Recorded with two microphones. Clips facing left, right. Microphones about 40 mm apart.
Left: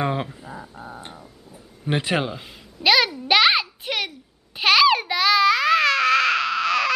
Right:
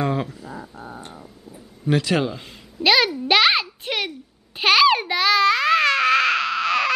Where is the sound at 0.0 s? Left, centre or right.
Left.